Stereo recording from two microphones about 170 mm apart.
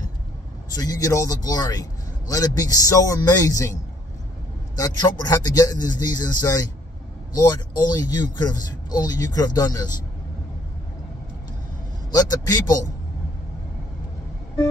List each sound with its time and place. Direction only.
0.7 s a man's voice: 20° left (ahead or behind)
4.7 s a man's voice: 20° left (ahead or behind)
12.1 s a man's voice: 25° left (ahead or behind)